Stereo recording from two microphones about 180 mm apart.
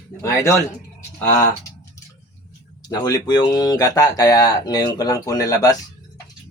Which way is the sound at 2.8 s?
20° left (ahead or behind).